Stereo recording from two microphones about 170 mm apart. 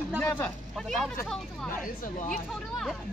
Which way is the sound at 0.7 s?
Centre (ahead or behind).